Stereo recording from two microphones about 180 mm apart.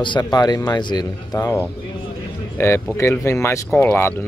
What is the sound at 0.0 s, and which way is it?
Speech, 25° left (ahead or behind).